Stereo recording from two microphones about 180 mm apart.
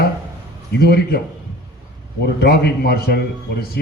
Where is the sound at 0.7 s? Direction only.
60° left (ahead or behind).